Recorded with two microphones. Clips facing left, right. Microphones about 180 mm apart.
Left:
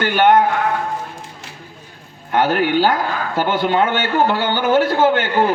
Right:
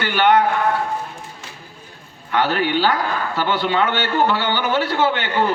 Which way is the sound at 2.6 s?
45° left (ahead or behind).